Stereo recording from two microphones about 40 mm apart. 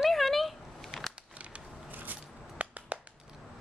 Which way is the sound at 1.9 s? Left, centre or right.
Right.